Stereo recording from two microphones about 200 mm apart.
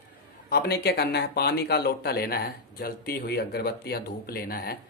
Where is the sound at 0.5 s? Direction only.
50° left (ahead or behind).